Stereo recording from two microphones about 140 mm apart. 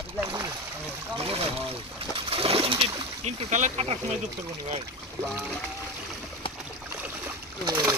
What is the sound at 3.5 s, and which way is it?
Speech, 55° right (ahead or behind).